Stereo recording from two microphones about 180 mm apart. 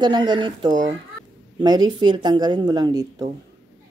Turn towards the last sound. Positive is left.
turn(degrees=-20)  # may be behind; listen again after turning